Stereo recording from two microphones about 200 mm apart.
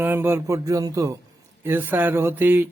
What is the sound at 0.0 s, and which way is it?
Speech, 10° right (ahead or behind).